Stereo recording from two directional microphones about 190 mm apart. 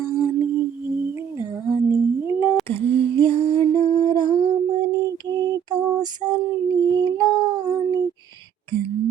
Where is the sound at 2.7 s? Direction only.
30° right (ahead or behind).